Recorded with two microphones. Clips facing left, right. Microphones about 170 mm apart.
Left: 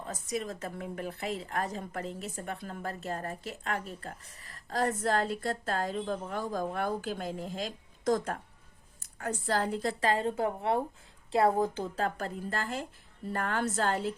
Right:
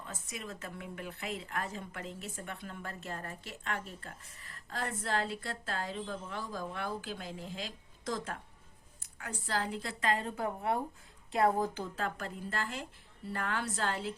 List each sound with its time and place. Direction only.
0.0 s a woman's voice: 40° left (ahead or behind)